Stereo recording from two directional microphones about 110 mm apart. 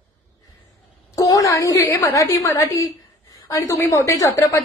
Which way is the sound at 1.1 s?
30° left (ahead or behind).